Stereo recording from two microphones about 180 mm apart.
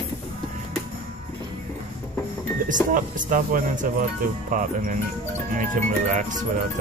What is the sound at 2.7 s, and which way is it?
Speech, 45° right (ahead or behind).